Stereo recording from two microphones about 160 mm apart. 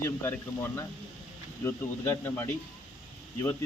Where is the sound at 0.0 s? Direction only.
15° left (ahead or behind).